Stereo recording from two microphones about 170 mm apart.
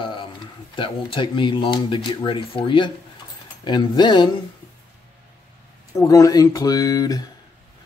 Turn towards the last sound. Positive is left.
turn(degrees=20)  # may be behind; listen again after turning